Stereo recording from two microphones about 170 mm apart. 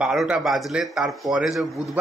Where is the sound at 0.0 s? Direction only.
5° right (ahead or behind).